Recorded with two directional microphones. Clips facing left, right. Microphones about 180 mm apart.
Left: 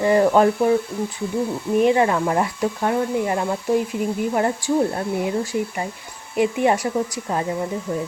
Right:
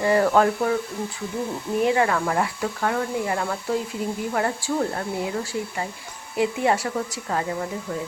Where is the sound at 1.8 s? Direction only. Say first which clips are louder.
Left 4 dB; 20° left (ahead or behind).